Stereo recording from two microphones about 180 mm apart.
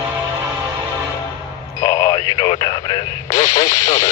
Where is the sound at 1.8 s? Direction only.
20° left (ahead or behind).